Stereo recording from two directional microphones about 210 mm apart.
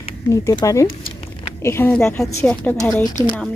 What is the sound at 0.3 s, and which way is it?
A woman's voice, 15° left (ahead or behind).